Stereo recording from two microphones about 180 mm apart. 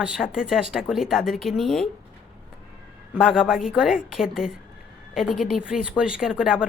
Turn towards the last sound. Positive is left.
turn(degrees=-5)  # may be behind; listen again after turning